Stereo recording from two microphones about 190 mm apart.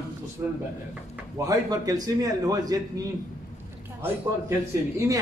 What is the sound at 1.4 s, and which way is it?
A man's voice, 20° right (ahead or behind).